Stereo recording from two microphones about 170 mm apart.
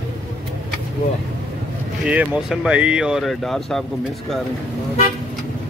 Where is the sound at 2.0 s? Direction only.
5° right (ahead or behind).